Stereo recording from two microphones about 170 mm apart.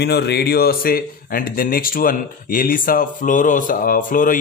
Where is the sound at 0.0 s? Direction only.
70° left (ahead or behind).